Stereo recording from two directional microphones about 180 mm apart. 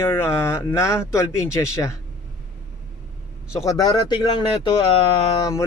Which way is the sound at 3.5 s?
20° left (ahead or behind).